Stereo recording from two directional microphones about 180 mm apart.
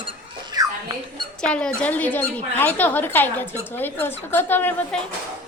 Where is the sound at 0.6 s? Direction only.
20° right (ahead or behind).